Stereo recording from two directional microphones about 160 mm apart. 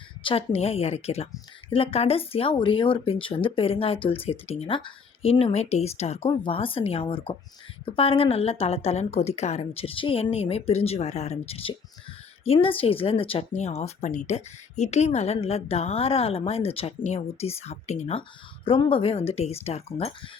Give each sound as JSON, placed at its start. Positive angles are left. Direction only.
{"t": 0.2, "sound": "speech", "side_deg": 35}
{"t": 18.2, "sound": "speech", "side_deg": 35}